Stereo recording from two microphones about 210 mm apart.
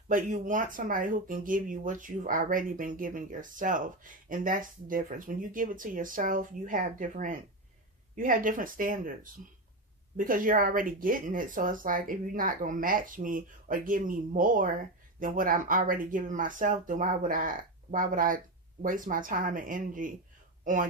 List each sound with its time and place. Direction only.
0.1 s speech: 40° right (ahead or behind)